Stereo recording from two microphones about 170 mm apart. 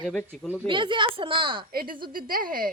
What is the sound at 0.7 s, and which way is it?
Speech, 30° right (ahead or behind).